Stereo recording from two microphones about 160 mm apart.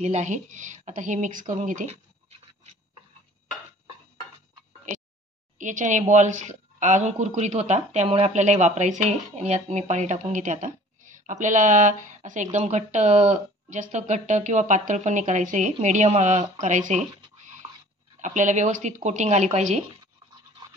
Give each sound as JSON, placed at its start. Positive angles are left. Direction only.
{"t": 0.0, "sound": "a woman's voice", "side_deg": -45}
{"t": 5.6, "sound": "a woman's voice", "side_deg": -50}
{"t": 16.6, "sound": "a sound", "side_deg": -50}
{"t": 18.2, "sound": "a woman's voice", "side_deg": -50}